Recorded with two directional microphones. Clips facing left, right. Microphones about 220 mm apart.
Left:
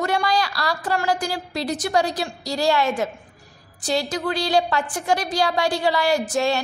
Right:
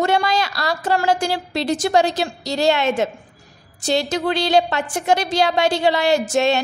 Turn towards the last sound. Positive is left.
turn(degrees=-25)  # may be behind; listen again after turning